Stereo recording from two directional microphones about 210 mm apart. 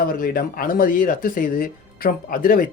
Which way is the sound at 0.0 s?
45° left (ahead or behind).